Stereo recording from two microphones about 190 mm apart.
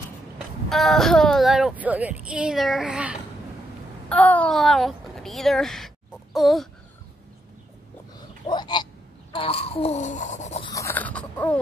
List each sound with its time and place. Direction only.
0.7 s speech: centre (ahead or behind)
4.1 s speech: 10° left (ahead or behind)
8.5 s speech: 25° left (ahead or behind); by 10.6 s 40° left (ahead or behind)
10.6 s a sound: 15° left (ahead or behind)